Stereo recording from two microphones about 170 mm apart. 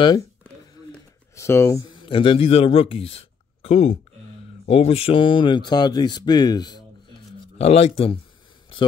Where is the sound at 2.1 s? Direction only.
30° left (ahead or behind).